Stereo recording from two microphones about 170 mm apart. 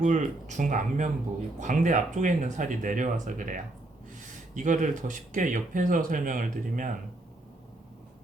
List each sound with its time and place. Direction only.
0.0 s speech: 45° right (ahead or behind)
4.5 s speech: 45° right (ahead or behind)